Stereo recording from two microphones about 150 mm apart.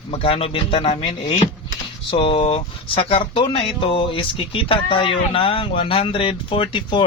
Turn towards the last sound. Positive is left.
turn(degrees=35)  # may be behind; listen again after turning